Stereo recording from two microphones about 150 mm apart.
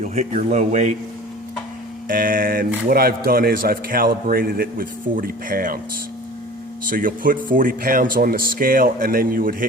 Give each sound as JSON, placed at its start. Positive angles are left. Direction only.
{"t": 0.0, "sound": "speech", "side_deg": -50}
{"t": 2.0, "sound": "a man's voice", "side_deg": -70}
{"t": 6.8, "sound": "a man's voice", "side_deg": -70}